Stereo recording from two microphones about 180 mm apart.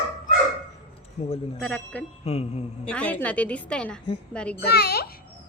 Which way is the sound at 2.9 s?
10° left (ahead or behind).